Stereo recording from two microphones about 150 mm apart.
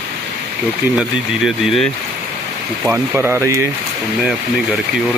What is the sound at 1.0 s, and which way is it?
Speech, centre (ahead or behind).